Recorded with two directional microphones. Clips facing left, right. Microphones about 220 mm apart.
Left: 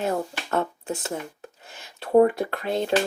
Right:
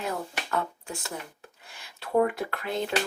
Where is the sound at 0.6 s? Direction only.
20° left (ahead or behind).